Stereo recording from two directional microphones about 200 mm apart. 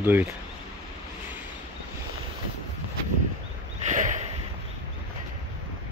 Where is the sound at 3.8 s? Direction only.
40° right (ahead or behind).